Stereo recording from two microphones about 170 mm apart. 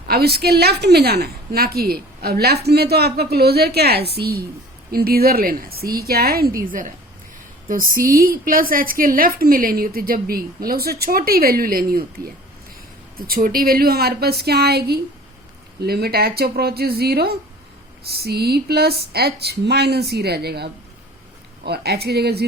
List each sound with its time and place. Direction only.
0.1 s a woman's voice: 65° right (ahead or behind)